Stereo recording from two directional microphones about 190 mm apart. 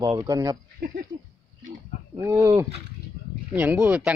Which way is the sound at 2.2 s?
15° right (ahead or behind).